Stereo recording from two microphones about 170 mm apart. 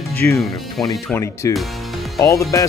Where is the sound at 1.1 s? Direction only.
15° left (ahead or behind).